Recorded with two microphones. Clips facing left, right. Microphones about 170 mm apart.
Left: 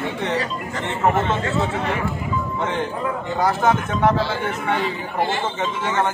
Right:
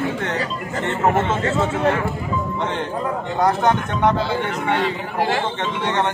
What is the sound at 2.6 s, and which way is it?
A man's voice, centre (ahead or behind).